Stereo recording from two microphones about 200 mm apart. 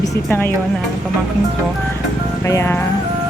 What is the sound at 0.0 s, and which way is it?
Speech, 10° left (ahead or behind).